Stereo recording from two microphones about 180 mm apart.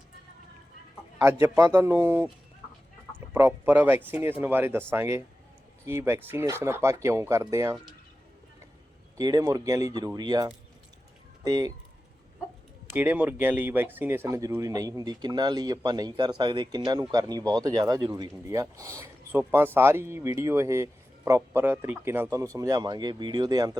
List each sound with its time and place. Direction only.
1.2 s speech: 15° right (ahead or behind)
3.3 s speech: 10° right (ahead or behind)
9.1 s speech: 20° right (ahead or behind)
12.9 s speech: 10° right (ahead or behind)